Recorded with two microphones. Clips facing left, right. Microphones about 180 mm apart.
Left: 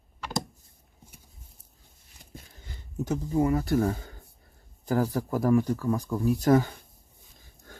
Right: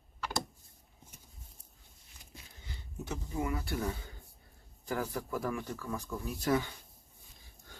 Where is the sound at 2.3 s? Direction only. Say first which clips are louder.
Left 5 dB; 45° left (ahead or behind).